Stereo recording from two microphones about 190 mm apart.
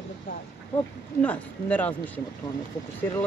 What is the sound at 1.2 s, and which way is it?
Speech, 10° left (ahead or behind).